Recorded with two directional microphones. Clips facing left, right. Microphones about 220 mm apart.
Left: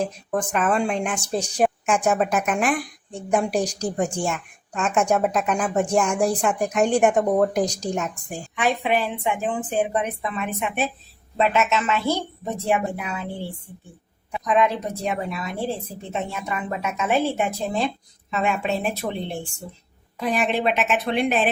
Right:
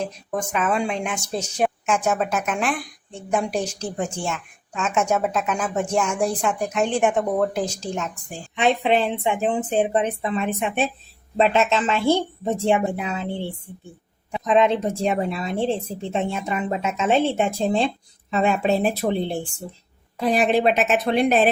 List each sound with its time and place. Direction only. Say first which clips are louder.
0.3 s speech: left 1 dB; 5° right (ahead or behind)
1.5 s a sound: left 1 dB; 5° left (ahead or behind)
2.0 s a woman's voice: left 4 dB; centre (ahead or behind)
4.3 s a woman's voice: left 1 dB; centre (ahead or behind)
8.5 s a woman's voice: right 3 dB; 25° right (ahead or behind)
14.3 s a woman's voice: right 3 dB; 25° right (ahead or behind)